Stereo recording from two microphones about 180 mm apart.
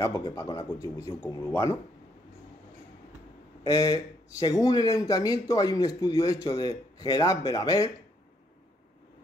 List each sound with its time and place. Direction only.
0.0 s a man's voice: 20° left (ahead or behind)
3.6 s speech: 20° left (ahead or behind)